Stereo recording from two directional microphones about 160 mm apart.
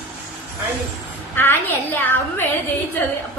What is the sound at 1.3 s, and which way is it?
A woman's voice, 15° left (ahead or behind).